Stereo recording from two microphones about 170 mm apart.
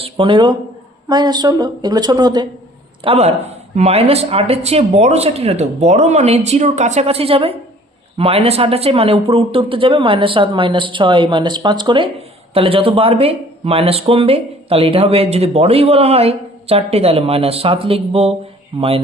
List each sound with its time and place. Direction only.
0.0 s a woman's voice: 30° right (ahead or behind)
3.0 s speech: 35° right (ahead or behind)